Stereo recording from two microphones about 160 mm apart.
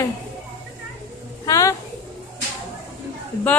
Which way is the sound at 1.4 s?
20° left (ahead or behind).